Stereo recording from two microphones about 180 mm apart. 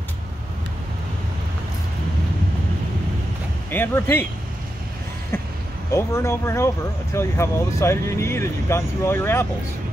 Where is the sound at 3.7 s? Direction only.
10° left (ahead or behind).